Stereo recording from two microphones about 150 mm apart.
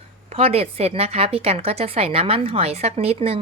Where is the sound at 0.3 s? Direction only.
40° right (ahead or behind).